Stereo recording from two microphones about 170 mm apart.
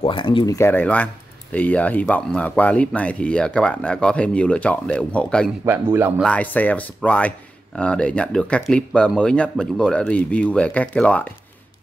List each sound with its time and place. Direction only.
0.0 s speech: 30° left (ahead or behind)
0.6 s speech: 10° left (ahead or behind)
5.7 s speech: 10° right (ahead or behind)
6.2 s speech: 10° left (ahead or behind)